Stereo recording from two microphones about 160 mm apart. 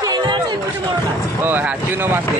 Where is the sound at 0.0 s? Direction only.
25° right (ahead or behind).